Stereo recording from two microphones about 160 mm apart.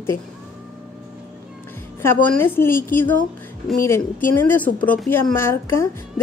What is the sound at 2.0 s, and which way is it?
A woman's voice, 15° left (ahead or behind).